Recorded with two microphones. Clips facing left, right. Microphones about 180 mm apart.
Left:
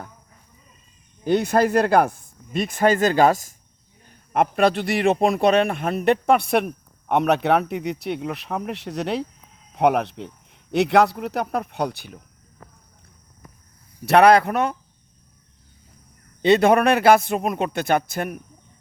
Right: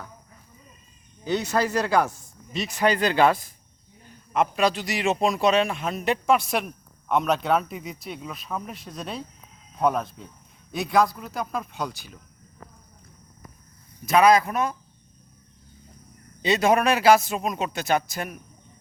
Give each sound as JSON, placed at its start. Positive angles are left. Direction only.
{"t": 1.2, "sound": "speech", "side_deg": 55}
{"t": 4.3, "sound": "a man's voice", "side_deg": 55}
{"t": 14.0, "sound": "speech", "side_deg": 65}
{"t": 16.4, "sound": "a man's voice", "side_deg": 60}